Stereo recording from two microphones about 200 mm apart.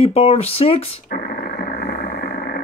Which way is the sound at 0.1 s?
30° left (ahead or behind).